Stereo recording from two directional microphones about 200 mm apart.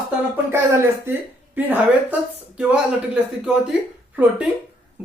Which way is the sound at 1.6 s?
10° right (ahead or behind).